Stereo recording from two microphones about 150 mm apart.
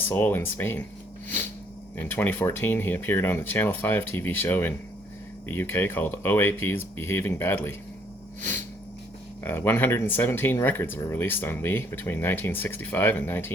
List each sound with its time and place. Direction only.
0.1 s speech: 15° left (ahead or behind)
2.0 s speech: 15° left (ahead or behind)
9.4 s speech: 15° left (ahead or behind)